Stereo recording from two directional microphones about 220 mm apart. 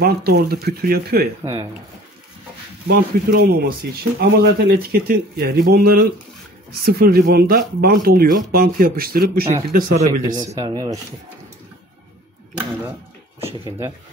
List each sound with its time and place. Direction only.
0.0 s speech: 45° right (ahead or behind)
1.4 s speech: 15° right (ahead or behind)
2.9 s speech: 45° right (ahead or behind)
10.3 s speech: 15° right (ahead or behind)
13.4 s speech: 25° right (ahead or behind)